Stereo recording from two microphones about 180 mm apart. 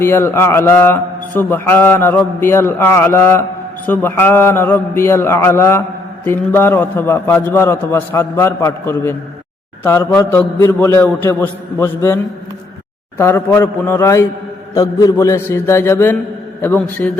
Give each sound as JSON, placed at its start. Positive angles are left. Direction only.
{"t": 0.0, "sound": "a man's voice", "side_deg": 15}